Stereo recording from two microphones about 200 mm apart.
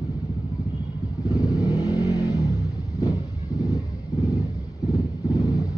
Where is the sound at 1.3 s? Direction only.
20° left (ahead or behind).